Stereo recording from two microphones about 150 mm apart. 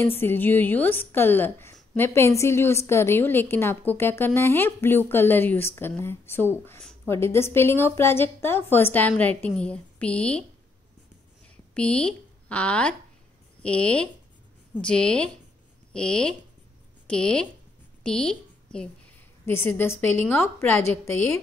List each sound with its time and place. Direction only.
0.0 s a woman's voice: 15° left (ahead or behind)
11.7 s a woman's voice: 5° left (ahead or behind)